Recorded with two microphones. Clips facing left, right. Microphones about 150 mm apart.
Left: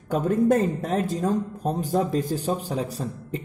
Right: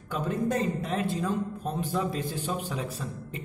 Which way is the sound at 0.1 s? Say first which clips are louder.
Left 8 dB; 50° left (ahead or behind).